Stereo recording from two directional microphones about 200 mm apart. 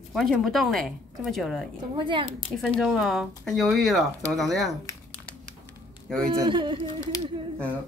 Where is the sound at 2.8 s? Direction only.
Centre (ahead or behind).